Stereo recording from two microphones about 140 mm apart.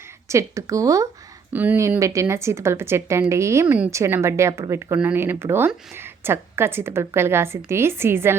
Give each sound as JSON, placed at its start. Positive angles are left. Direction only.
{"t": 0.3, "sound": "speech", "side_deg": -20}